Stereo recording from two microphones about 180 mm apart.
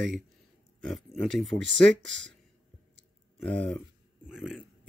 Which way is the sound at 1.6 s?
90° right.